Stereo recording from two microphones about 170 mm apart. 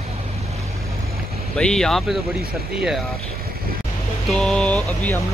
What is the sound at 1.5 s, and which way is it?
Speech, 5° left (ahead or behind).